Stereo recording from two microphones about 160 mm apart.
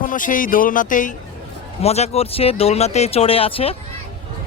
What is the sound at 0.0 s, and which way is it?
Speech, 55° left (ahead or behind).